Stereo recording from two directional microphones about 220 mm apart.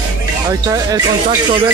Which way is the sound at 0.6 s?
15° right (ahead or behind).